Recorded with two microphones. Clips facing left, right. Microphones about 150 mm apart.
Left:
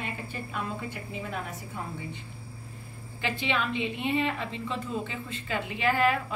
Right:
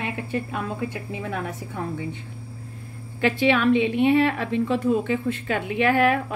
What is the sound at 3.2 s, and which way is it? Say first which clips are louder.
A woman's voice: right 10 dB; 65° right (ahead or behind).